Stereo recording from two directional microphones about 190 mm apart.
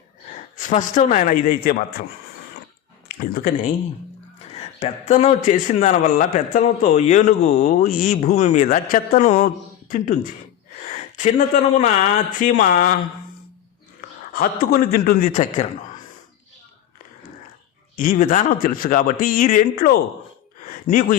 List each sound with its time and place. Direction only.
0.3 s a man's voice: 45° left (ahead or behind)
3.2 s a man's voice: 50° left (ahead or behind)
4.5 s speech: 30° left (ahead or behind)
10.8 s a man's voice: 40° left (ahead or behind)
14.3 s a man's voice: 50° left (ahead or behind)
17.9 s a man's voice: 45° left (ahead or behind)
20.7 s a sound: 45° left (ahead or behind)